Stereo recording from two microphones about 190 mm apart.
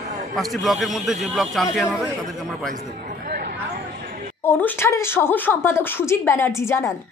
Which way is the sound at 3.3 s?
50° right (ahead or behind).